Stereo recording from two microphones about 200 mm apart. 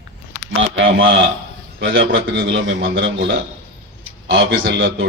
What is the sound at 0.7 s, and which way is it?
Speech, 75° right (ahead or behind).